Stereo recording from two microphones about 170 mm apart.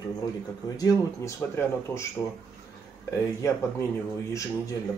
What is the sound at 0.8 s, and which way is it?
Speech, 20° left (ahead or behind).